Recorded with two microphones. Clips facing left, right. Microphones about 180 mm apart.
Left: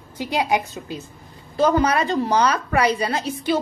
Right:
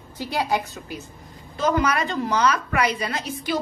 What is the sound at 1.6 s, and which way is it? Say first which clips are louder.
A woman's voice: left 4 dB; 30° left (ahead or behind).